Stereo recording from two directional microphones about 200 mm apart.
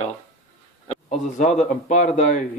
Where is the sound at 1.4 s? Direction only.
35° left (ahead or behind).